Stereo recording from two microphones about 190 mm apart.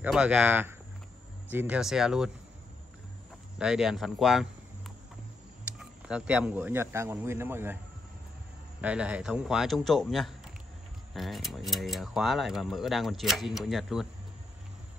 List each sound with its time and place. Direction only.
0.0 s speech: 5° right (ahead or behind)
3.5 s speech: 5° right (ahead or behind)
8.8 s speech: 5° right (ahead or behind)